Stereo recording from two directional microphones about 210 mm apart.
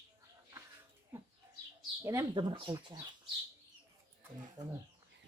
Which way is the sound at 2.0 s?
15° right (ahead or behind).